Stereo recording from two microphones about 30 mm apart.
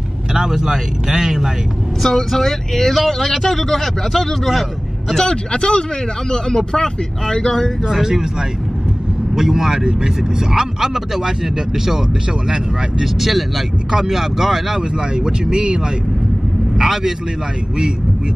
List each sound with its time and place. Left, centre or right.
0.3 s speech: right
2.0 s speech: centre
5.1 s speech: left
5.5 s speech: left
8.0 s speech: centre
12.4 s speech: right
13.0 s speech: centre
14.8 s speech: right
16.7 s a man's voice: centre